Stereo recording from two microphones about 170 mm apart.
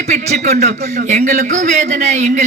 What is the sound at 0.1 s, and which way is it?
A man's voice, 45° right (ahead or behind).